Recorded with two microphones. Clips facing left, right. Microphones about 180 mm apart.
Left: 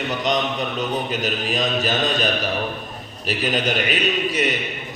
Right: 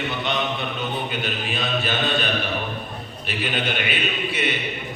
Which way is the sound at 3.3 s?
40° left (ahead or behind).